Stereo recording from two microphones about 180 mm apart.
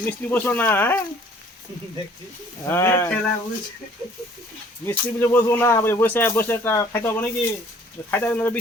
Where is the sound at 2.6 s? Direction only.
15° left (ahead or behind).